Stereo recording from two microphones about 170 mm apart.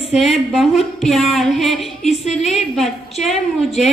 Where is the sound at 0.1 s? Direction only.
Centre (ahead or behind).